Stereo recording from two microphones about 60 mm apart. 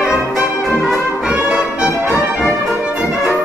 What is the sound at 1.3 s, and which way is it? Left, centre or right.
Brass instrument, centre.